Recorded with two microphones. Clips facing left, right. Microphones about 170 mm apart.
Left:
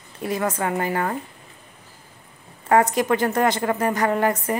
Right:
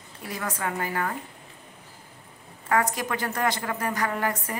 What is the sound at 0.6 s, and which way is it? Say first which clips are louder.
Speech: left 6 dB; 30° left (ahead or behind).